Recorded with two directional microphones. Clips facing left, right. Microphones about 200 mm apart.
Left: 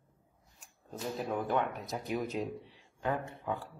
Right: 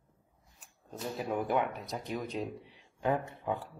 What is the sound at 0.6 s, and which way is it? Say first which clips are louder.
Speech: even; centre (ahead or behind).